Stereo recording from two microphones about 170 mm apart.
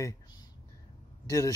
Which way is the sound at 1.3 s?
20° left (ahead or behind).